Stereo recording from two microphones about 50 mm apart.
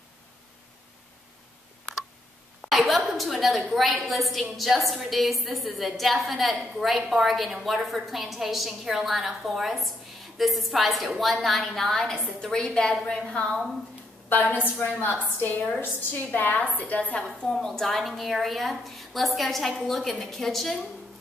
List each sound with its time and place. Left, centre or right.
2.6 s a woman's voice: centre
14.3 s a woman's voice: left
16.3 s a woman's voice: left
17.5 s a woman's voice: centre